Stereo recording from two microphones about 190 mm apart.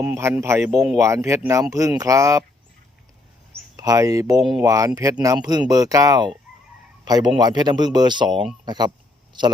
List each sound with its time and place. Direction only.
0.0 s speech: 15° right (ahead or behind)
3.5 s speech: 15° right (ahead or behind)
8.3 s speech: 5° right (ahead or behind)
8.6 s speech: 20° right (ahead or behind)